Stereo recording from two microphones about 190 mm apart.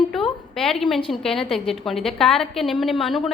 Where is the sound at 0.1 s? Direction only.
Centre (ahead or behind).